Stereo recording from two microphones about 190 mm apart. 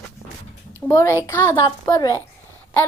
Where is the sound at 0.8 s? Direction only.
15° left (ahead or behind).